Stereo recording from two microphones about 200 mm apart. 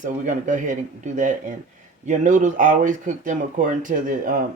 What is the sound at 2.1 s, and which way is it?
Speech, 40° right (ahead or behind).